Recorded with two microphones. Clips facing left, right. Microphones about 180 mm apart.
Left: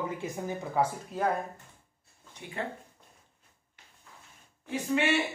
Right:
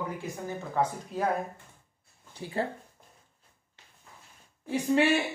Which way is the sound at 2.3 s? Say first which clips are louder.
Right 5 dB; 30° right (ahead or behind).